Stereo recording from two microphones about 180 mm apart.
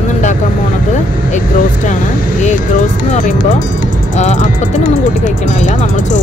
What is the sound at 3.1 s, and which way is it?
Speech, 45° left (ahead or behind).